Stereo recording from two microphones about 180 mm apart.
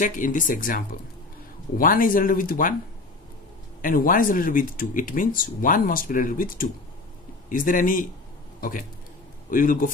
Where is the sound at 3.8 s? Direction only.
50° left (ahead or behind).